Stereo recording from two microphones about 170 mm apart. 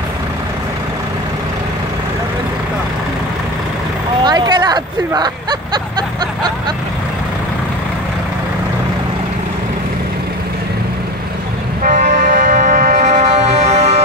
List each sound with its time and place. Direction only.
4.2 s vehicle: 25° right (ahead or behind)
11.8 s music: 50° right (ahead or behind)